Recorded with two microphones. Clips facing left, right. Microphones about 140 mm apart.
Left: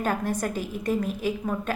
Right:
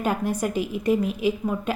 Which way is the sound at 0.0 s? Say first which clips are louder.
Right 2 dB; 10° right (ahead or behind).